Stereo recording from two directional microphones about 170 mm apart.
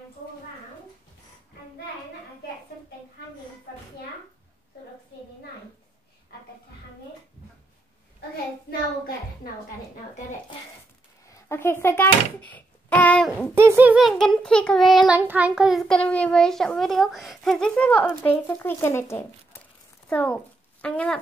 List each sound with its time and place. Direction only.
8.6 s a sound: 65° left (ahead or behind)
11.2 s a child's voice: 15° left (ahead or behind)
13.6 s a child's voice: 15° right (ahead or behind); by 15.0 s 5° left (ahead or behind)
15.0 s a child's voice: 10° right (ahead or behind); by 21.2 s 5° left (ahead or behind)